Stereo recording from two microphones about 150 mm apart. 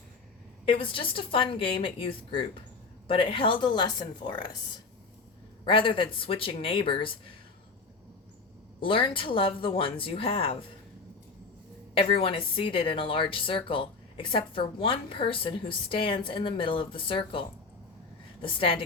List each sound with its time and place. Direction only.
0.6 s a woman's voice: 35° left (ahead or behind)
8.8 s a woman's voice: 35° left (ahead or behind)
11.9 s a woman's voice: 40° left (ahead or behind)
18.4 s a woman's voice: 35° left (ahead or behind)